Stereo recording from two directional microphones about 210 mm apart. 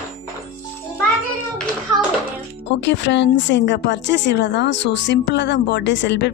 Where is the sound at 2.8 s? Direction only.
55° left (ahead or behind).